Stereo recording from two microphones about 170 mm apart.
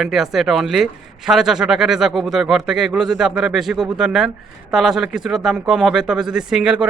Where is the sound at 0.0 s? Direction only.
Centre (ahead or behind).